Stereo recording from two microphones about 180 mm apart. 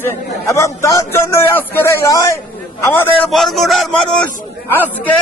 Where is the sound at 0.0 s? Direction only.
15° left (ahead or behind).